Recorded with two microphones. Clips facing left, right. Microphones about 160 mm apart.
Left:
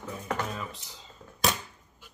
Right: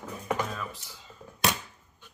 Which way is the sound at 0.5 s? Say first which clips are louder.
Even; 20° left (ahead or behind).